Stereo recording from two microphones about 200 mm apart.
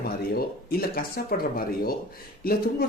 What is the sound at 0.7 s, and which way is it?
Speech, 50° left (ahead or behind).